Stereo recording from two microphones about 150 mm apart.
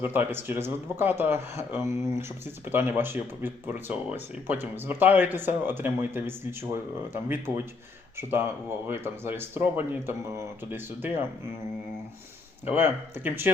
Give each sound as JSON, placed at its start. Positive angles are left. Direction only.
{"t": 0.0, "sound": "speech", "side_deg": -15}
{"t": 12.6, "sound": "speech", "side_deg": -15}